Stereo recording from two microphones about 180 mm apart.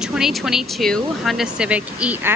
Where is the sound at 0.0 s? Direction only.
5° right (ahead or behind).